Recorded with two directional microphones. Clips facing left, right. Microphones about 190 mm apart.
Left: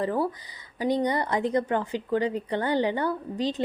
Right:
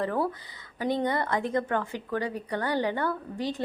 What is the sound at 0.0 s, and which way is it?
Speech, 15° left (ahead or behind).